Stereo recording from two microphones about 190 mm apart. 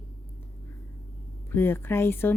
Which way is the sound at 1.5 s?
10° left (ahead or behind).